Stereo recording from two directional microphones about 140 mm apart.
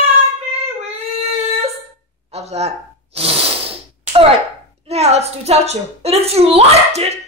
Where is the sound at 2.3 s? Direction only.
50° right (ahead or behind).